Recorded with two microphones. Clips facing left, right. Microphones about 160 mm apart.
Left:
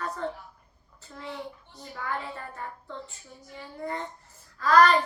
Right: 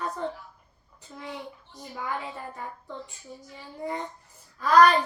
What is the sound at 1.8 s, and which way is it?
A child's voice, 15° right (ahead or behind).